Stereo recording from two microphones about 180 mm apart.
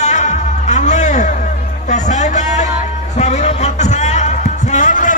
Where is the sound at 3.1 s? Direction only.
40° left (ahead or behind).